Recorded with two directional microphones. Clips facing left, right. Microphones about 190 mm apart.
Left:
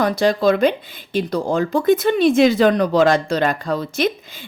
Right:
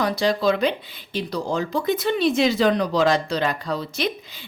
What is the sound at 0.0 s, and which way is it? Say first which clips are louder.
Speech: left 4 dB; 50° left (ahead or behind).